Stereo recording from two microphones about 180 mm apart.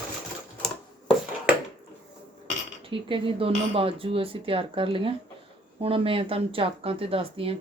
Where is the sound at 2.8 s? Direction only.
30° right (ahead or behind).